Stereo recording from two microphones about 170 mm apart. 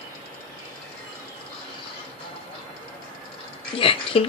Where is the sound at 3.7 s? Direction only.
30° left (ahead or behind).